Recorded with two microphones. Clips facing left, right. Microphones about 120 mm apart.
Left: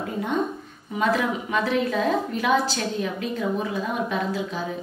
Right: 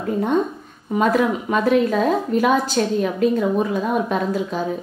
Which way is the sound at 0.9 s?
45° right (ahead or behind).